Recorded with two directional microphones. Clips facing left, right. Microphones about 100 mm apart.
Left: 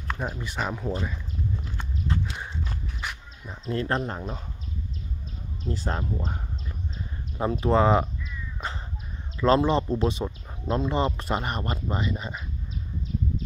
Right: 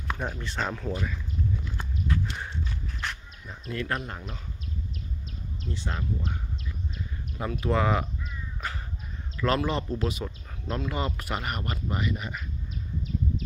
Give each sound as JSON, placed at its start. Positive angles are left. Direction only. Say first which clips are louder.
{"t": 0.2, "sound": "speech", "louder": "left 2 dB", "side_deg": 10}
{"t": 2.1, "sound": "horse", "louder": "even", "side_deg": 30}
{"t": 3.0, "sound": "a sound", "louder": "right 1 dB", "side_deg": 10}
{"t": 3.4, "sound": "speech", "louder": "left 4 dB", "side_deg": 30}
{"t": 5.7, "sound": "speech", "louder": "left 4 dB", "side_deg": 40}
{"t": 7.3, "sound": "speech", "louder": "left 5 dB", "side_deg": 30}
{"t": 9.4, "sound": "speech", "louder": "left 6 dB", "side_deg": 25}